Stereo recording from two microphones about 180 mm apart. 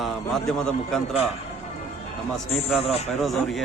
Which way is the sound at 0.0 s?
Centre (ahead or behind).